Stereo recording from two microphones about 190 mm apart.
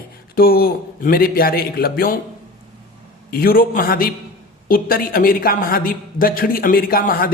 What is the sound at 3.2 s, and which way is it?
A woman's voice, 50° left (ahead or behind).